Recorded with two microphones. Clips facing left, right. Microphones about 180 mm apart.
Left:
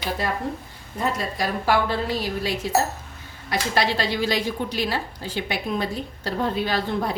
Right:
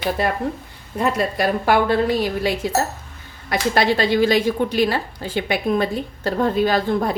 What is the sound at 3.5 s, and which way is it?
A woman's voice, 55° right (ahead or behind).